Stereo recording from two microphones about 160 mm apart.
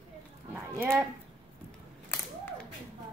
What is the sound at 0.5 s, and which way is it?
Speech, 10° right (ahead or behind).